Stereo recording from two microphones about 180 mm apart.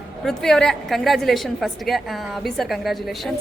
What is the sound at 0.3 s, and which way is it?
A woman's voice, 5° left (ahead or behind).